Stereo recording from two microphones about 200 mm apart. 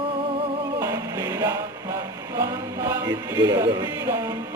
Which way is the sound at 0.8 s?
15° right (ahead or behind).